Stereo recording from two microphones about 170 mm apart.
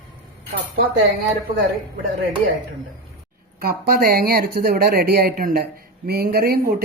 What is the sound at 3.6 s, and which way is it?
A woman's voice, 60° right (ahead or behind).